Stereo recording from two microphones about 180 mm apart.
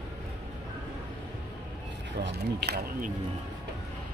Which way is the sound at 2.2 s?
65° right (ahead or behind).